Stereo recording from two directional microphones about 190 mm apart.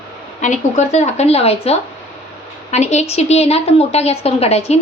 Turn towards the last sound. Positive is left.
turn(degrees=35)  # may be behind; listen again after turning